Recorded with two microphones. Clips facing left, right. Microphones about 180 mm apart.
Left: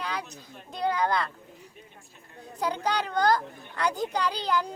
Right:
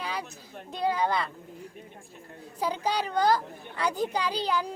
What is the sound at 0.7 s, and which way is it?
Speech, 5° right (ahead or behind).